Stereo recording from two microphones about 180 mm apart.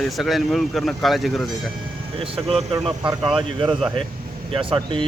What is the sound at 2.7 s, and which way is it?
Speech, 25° right (ahead or behind).